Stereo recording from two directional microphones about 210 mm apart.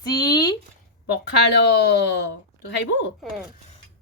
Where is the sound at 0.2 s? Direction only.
20° left (ahead or behind).